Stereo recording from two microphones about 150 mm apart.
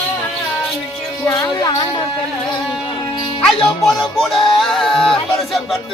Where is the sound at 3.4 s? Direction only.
5° left (ahead or behind).